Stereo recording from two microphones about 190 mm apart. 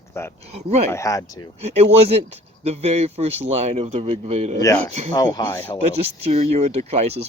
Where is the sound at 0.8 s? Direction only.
15° left (ahead or behind).